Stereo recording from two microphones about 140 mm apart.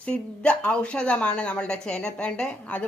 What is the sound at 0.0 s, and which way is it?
Speech, 10° left (ahead or behind).